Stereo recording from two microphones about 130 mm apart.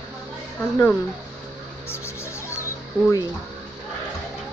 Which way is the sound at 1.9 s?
20° left (ahead or behind).